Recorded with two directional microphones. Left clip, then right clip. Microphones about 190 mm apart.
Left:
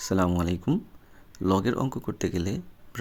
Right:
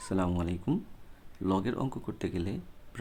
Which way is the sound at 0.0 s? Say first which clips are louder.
Left 6 dB; 25° left (ahead or behind).